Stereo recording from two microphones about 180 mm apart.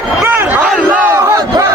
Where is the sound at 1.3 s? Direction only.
20° right (ahead or behind).